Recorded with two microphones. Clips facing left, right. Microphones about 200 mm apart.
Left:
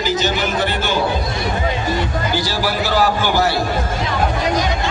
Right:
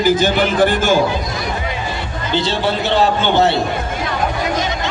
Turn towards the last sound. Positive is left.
turn(degrees=-25)  # may be behind; listen again after turning